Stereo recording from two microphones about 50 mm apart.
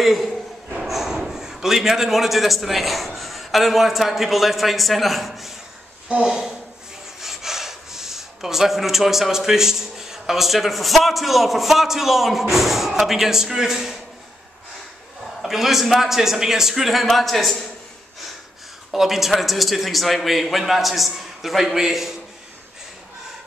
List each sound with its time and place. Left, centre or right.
0.0 s a man's voice: centre
6.2 s speech: centre
15.4 s a man's voice: centre
18.9 s a man's voice: centre